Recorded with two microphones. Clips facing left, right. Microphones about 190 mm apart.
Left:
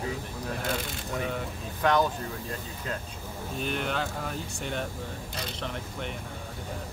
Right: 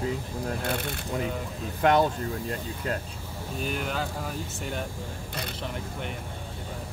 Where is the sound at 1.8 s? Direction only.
25° right (ahead or behind).